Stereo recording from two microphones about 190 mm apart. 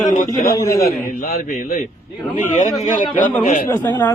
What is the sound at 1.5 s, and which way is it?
Speech, 40° left (ahead or behind).